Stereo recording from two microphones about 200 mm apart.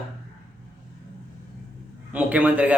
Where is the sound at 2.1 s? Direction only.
5° right (ahead or behind).